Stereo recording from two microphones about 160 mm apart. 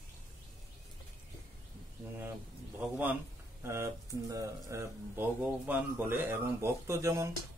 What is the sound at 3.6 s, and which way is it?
A man's voice, 15° right (ahead or behind).